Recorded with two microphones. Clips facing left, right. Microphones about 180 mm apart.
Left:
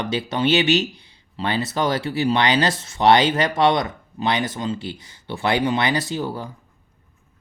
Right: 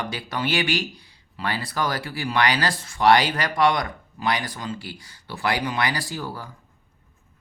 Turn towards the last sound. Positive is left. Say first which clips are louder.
# left 6 dB
turn(degrees=20)  # may be behind; listen again after turning